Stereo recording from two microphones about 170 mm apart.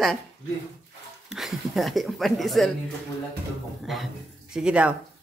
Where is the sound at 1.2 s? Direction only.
Centre (ahead or behind).